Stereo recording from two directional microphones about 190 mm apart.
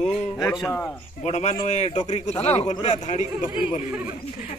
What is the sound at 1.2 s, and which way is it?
A man's voice, 35° left (ahead or behind).